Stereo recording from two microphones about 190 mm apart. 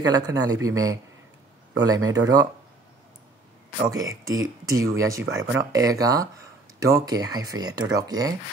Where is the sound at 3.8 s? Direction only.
20° right (ahead or behind).